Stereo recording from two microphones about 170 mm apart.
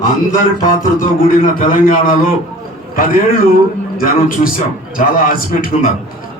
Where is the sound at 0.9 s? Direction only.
55° left (ahead or behind).